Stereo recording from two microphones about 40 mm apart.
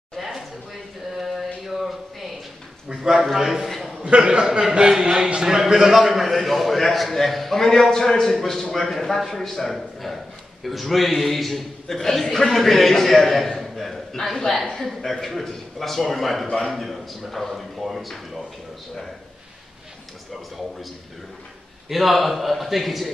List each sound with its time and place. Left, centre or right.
0.2 s a sound: centre
1.1 s mantra: centre
2.9 s a man's voice: centre
3.6 s a sound: centre
4.0 s a man's voice: right; by 18.1 s centre
21.8 s a man's voice: centre